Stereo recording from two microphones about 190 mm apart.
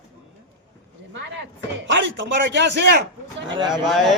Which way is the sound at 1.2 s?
70° right (ahead or behind).